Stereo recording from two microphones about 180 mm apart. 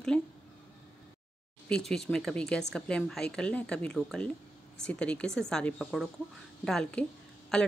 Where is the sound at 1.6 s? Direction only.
5° left (ahead or behind).